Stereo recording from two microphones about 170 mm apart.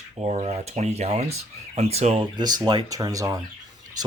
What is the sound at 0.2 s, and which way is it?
Speech, 40° right (ahead or behind).